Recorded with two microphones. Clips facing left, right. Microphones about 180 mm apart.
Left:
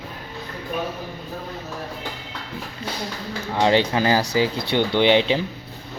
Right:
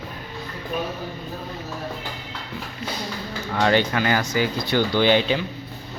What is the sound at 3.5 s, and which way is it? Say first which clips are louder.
Speech: left 1 dB; 25° left (ahead or behind).